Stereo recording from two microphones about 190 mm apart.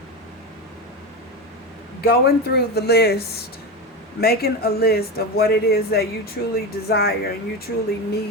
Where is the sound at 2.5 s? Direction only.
55° left (ahead or behind).